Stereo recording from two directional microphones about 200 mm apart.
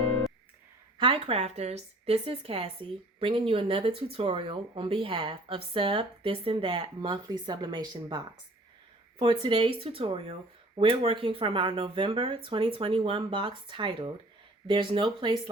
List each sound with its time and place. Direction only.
0.9 s a woman's voice: 25° right (ahead or behind)